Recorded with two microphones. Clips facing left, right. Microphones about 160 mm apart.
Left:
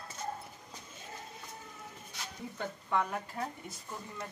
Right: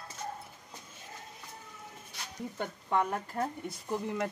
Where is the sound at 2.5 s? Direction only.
45° right (ahead or behind).